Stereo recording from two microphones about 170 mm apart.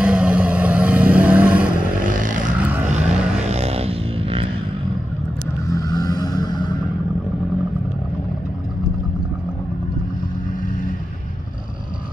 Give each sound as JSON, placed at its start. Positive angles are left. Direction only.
{"t": 0.0, "sound": "vehicle", "side_deg": -5}
{"t": 2.0, "sound": "vehicle", "side_deg": -50}
{"t": 5.7, "sound": "vehicle", "side_deg": 20}